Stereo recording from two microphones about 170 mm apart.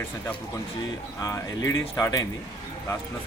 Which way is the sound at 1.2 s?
20° left (ahead or behind).